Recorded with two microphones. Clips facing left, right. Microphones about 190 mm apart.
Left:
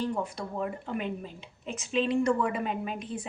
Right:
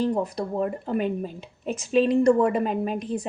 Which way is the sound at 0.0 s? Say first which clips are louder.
Right 7 dB; 40° right (ahead or behind).